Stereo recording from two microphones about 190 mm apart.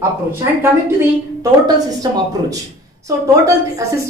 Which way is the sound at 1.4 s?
20° right (ahead or behind).